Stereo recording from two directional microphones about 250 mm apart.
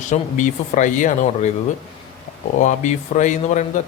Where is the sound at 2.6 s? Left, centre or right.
Left.